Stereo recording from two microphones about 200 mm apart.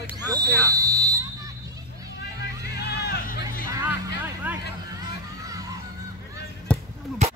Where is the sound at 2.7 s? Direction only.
55° left (ahead or behind).